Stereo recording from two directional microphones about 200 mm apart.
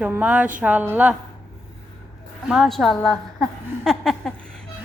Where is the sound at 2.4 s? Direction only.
Centre (ahead or behind).